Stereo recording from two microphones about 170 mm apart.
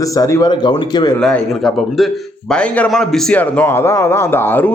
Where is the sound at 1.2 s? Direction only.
5° left (ahead or behind).